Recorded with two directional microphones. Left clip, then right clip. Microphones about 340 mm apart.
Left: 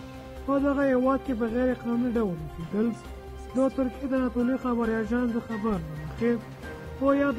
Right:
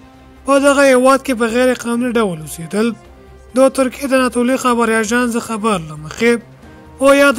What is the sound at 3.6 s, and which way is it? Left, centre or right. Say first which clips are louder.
Speech: right 15 dB; centre.